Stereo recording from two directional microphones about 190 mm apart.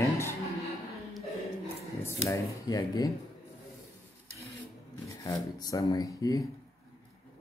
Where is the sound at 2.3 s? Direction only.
20° left (ahead or behind).